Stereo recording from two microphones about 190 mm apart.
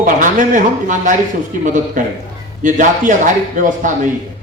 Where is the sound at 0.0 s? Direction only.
45° right (ahead or behind).